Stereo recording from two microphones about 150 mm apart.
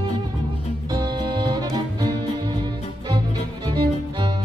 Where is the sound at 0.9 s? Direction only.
30° right (ahead or behind).